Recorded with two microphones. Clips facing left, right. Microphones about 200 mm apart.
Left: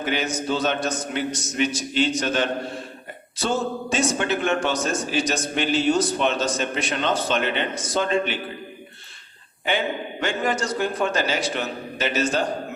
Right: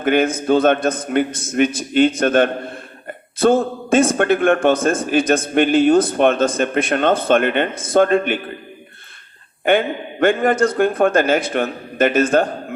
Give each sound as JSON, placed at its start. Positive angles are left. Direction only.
{"t": 0.0, "sound": "a man's voice", "side_deg": -55}
{"t": 9.6, "sound": "a man's voice", "side_deg": -55}